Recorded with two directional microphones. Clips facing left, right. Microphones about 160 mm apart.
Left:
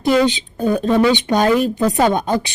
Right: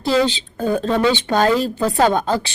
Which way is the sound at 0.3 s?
15° left (ahead or behind).